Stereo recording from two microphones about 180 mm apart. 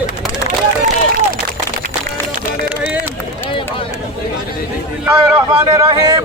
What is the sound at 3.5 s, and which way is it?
Run, 30° left (ahead or behind).